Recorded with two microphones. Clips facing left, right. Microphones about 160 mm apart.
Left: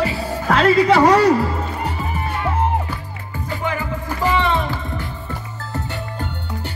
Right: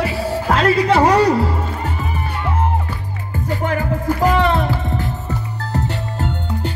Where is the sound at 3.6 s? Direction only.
50° right (ahead or behind).